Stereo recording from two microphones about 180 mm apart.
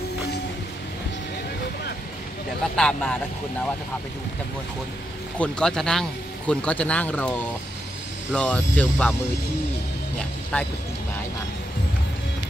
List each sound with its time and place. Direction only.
2.7 s speech: 5° left (ahead or behind)
5.4 s speech: 5° left (ahead or behind)
10.5 s speech: 5° left (ahead or behind)